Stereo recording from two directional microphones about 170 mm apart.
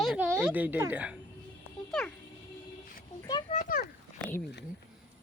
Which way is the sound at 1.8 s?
5° left (ahead or behind).